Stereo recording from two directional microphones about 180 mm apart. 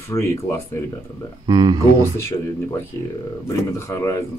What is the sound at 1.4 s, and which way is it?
Speech, 25° right (ahead or behind).